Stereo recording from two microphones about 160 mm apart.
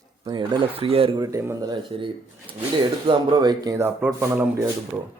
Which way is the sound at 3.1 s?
30° right (ahead or behind).